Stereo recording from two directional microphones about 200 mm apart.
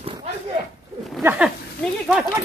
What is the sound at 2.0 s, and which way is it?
Speech, 5° right (ahead or behind).